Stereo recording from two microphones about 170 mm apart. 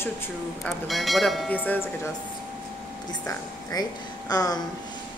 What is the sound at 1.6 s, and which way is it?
Speech, 10° left (ahead or behind).